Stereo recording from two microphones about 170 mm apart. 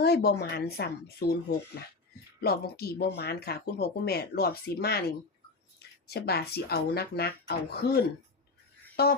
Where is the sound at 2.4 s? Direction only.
70° left (ahead or behind).